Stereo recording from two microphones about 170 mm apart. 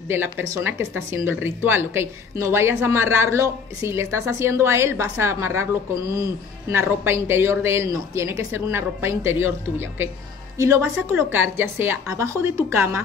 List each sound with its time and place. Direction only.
0.1 s a woman's voice: 15° right (ahead or behind)